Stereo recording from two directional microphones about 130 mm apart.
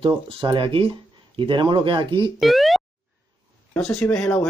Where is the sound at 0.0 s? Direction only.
40° right (ahead or behind).